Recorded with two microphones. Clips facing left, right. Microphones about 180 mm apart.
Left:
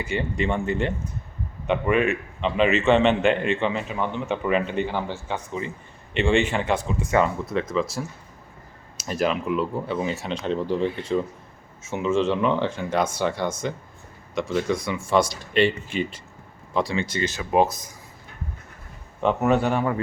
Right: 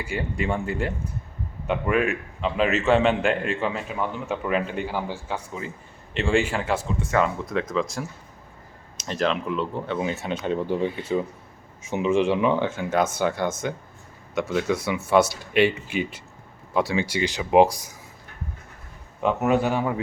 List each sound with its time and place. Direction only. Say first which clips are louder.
0.0 s a man's voice: left 2 dB; 5° right (ahead or behind)
19.2 s speech: left 1 dB; 5° right (ahead or behind)